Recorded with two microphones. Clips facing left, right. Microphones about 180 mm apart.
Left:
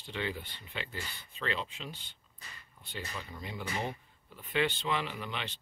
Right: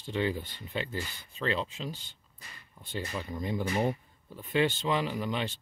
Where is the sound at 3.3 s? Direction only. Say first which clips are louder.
Right 9 dB; 40° right (ahead or behind).